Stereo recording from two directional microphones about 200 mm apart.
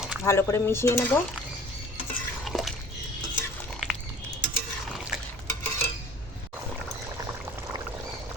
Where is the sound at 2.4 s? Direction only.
Centre (ahead or behind).